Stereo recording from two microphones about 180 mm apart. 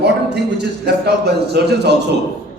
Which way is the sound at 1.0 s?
65° right (ahead or behind).